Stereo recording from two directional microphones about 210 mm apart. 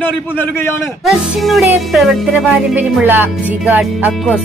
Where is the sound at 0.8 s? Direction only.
Centre (ahead or behind).